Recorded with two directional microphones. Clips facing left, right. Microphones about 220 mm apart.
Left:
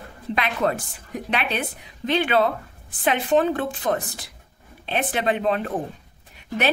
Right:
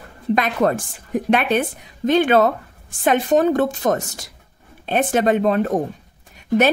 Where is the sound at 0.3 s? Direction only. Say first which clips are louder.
Right 5 dB; 45° right (ahead or behind).